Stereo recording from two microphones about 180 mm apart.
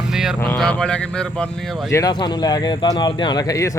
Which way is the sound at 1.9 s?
20° left (ahead or behind).